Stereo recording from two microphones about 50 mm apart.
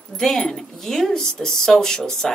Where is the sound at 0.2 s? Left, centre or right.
Centre.